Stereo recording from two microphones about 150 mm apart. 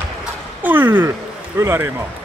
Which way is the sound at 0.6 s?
15° right (ahead or behind).